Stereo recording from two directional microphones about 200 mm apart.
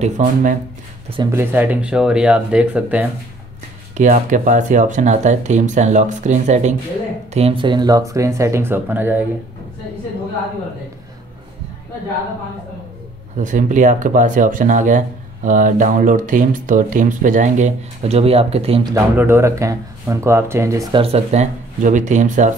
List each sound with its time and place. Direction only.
0.0 s speech: 40° right (ahead or behind)
1.1 s speech: 15° right (ahead or behind)
3.9 s speech: 40° right (ahead or behind); by 9.2 s 10° right (ahead or behind)
13.4 s speech: 40° right (ahead or behind)
19.1 s speech: 10° right (ahead or behind)
21.0 s speech: 30° right (ahead or behind)